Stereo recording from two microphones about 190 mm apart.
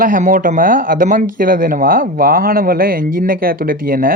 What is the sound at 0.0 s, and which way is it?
Speech, 45° right (ahead or behind).